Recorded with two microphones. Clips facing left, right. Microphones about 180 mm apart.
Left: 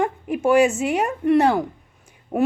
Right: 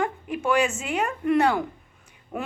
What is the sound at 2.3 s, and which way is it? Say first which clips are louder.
Speech: left 12 dB; 45° left (ahead or behind).